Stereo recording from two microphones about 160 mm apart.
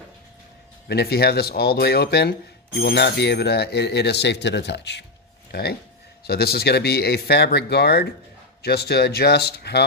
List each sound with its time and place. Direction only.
0.9 s speech: 85° left
5.5 s speech: 80° left